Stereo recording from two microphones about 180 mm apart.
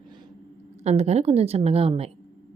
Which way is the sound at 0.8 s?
35° right (ahead or behind).